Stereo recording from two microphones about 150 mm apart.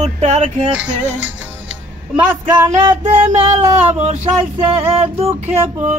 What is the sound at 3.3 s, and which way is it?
Music, 45° right (ahead or behind).